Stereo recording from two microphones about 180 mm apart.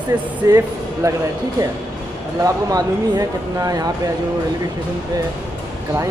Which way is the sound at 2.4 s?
20° right (ahead or behind).